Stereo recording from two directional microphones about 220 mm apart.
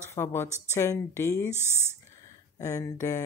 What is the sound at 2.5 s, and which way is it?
Speech, 15° left (ahead or behind).